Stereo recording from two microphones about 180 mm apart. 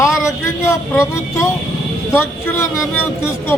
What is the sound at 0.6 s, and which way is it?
A woman's voice, 15° left (ahead or behind).